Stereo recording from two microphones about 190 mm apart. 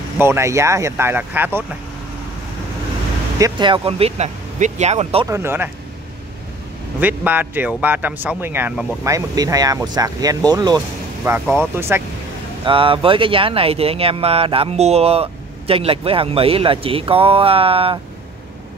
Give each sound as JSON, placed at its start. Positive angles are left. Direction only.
{"t": 0.2, "sound": "speech", "side_deg": -15}
{"t": 3.3, "sound": "speech", "side_deg": -20}
{"t": 5.2, "sound": "speech", "side_deg": -15}
{"t": 7.0, "sound": "speech", "side_deg": -10}
{"t": 11.4, "sound": "speech", "side_deg": 5}
{"t": 11.7, "sound": "speech", "side_deg": -10}
{"t": 12.6, "sound": "speech", "side_deg": -25}